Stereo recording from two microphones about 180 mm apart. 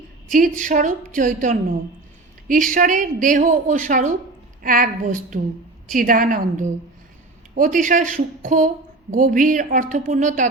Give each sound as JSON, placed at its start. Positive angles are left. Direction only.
{"t": 0.3, "sound": "a woman's voice", "side_deg": -45}